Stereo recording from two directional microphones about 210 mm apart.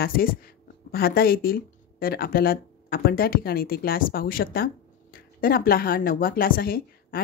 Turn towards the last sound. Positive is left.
turn(degrees=45)  # may be behind; listen again after turning